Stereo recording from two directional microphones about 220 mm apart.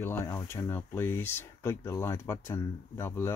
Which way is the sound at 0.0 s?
10° left (ahead or behind).